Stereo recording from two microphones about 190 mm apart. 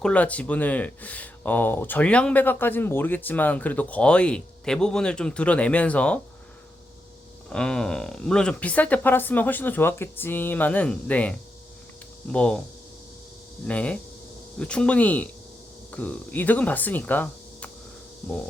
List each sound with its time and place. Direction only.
0.0 s speech: 5° left (ahead or behind)
7.5 s speech: 5° left (ahead or behind)
13.7 s speech: 5° left (ahead or behind)